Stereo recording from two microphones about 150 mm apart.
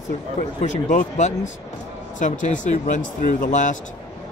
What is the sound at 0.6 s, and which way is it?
Speech, 55° left (ahead or behind).